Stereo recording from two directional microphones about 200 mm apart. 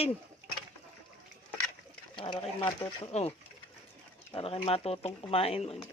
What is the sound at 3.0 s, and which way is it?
Speech, 30° left (ahead or behind).